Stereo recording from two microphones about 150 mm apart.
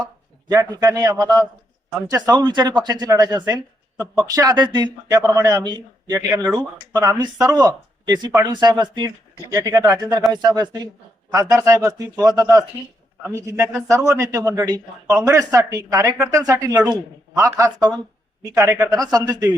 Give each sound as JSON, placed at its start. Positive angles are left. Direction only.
{"t": 0.0, "sound": "a man's voice", "side_deg": -25}